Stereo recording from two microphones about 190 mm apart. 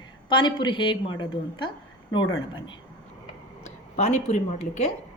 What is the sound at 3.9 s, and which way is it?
Speech, 35° left (ahead or behind).